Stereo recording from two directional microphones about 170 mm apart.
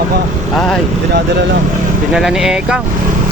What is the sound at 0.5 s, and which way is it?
Speech, 5° left (ahead or behind).